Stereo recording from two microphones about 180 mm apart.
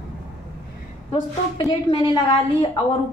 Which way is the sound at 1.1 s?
25° left (ahead or behind).